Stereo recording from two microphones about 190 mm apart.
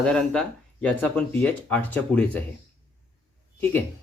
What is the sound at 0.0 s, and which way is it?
Speech, 5° left (ahead or behind).